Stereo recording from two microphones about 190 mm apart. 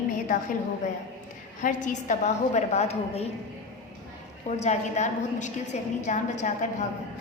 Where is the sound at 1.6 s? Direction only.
40° left (ahead or behind).